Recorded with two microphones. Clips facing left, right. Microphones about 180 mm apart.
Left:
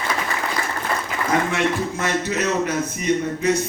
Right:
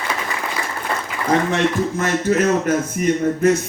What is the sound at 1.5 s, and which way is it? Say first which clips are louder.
Speech: right 3 dB; 50° right (ahead or behind).